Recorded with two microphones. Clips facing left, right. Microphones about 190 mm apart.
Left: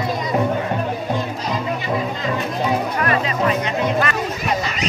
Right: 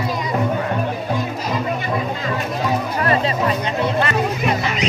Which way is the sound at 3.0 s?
35° right (ahead or behind).